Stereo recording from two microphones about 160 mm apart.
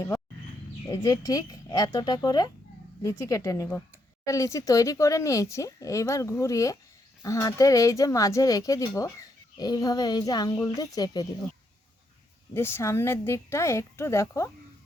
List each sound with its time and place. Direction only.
0.9 s speech: 20° left (ahead or behind)
12.5 s a woman's voice: 15° left (ahead or behind)